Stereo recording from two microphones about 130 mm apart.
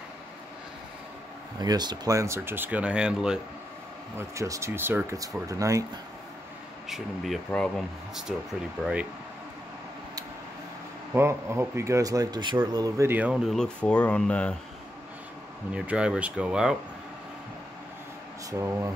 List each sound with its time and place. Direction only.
1.6 s speech: 35° right (ahead or behind); by 3.3 s 5° right (ahead or behind)
4.2 s speech: 25° right (ahead or behind)
6.9 s speech: 5° left (ahead or behind)
11.1 s speech: 20° right (ahead or behind)
13.2 s speech: 5° right (ahead or behind)
15.7 s speech: 10° right (ahead or behind)